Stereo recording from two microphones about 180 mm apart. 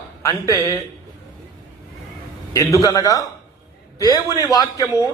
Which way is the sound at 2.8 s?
20° left (ahead or behind).